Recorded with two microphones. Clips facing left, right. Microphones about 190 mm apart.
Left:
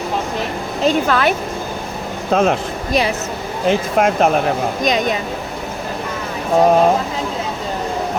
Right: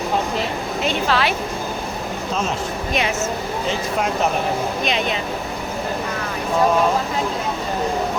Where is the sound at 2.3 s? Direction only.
60° left (ahead or behind).